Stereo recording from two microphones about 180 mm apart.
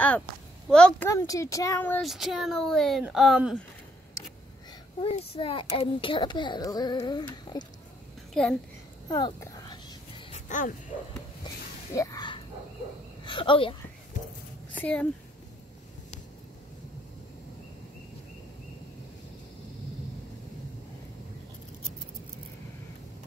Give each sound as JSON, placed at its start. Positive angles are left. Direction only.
{"t": 0.7, "sound": "speech", "side_deg": 5}
{"t": 1.0, "sound": "speech", "side_deg": 20}
{"t": 2.0, "sound": "speech", "side_deg": 0}
{"t": 5.0, "sound": "a child's voice", "side_deg": 35}
{"t": 8.3, "sound": "a child's voice", "side_deg": 5}
{"t": 9.1, "sound": "a sound", "side_deg": 20}
{"t": 10.5, "sound": "speech", "side_deg": 45}
{"t": 11.9, "sound": "a sound", "side_deg": 15}
{"t": 13.2, "sound": "speech", "side_deg": 25}
{"t": 14.7, "sound": "speech", "side_deg": 5}